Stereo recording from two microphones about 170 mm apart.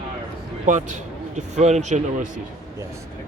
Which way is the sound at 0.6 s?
45° right (ahead or behind).